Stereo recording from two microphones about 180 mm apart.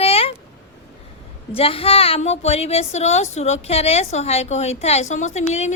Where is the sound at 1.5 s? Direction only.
30° left (ahead or behind).